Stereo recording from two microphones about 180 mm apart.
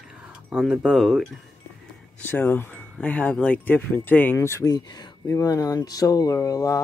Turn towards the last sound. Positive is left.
turn(degrees=20)  # may be behind; listen again after turning